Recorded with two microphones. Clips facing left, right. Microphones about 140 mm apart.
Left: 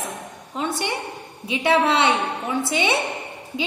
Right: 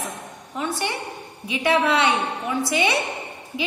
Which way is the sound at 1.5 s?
25° left (ahead or behind).